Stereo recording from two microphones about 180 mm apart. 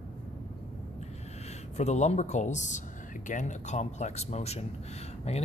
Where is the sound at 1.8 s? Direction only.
40° left (ahead or behind).